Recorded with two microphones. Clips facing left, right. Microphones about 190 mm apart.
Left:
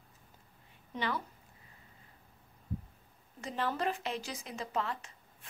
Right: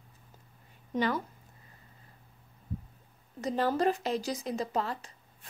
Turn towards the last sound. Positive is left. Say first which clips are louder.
# right 3 dB
turn(degrees=-35)  # may be behind; listen again after turning